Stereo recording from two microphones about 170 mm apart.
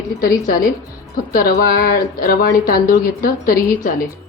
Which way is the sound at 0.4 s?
55° left (ahead or behind).